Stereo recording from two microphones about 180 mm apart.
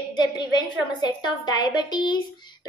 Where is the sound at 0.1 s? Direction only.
25° left (ahead or behind).